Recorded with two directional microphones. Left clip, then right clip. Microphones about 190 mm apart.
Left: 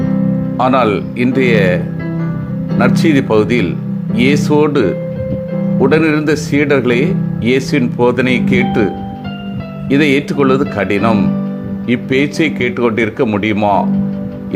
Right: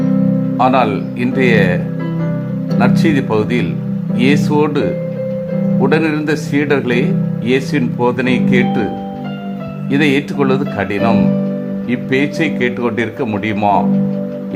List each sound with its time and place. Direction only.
0.5 s speech: 15° left (ahead or behind)
9.9 s speech: 15° left (ahead or behind)